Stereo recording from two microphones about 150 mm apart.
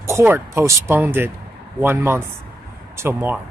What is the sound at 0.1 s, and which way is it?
A man's voice, 15° right (ahead or behind).